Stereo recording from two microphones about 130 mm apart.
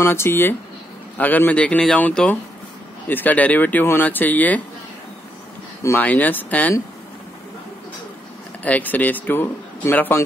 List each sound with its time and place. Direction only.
0.0 s a man's voice: 20° left (ahead or behind)
5.8 s a man's voice: 20° left (ahead or behind)
8.6 s a man's voice: 10° left (ahead or behind)